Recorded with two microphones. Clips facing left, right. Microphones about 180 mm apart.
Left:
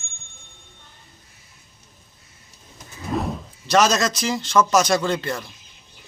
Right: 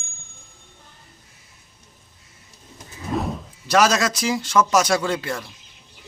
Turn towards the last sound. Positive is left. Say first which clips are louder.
# left 1 dB
turn(degrees=-5)  # may be behind; listen again after turning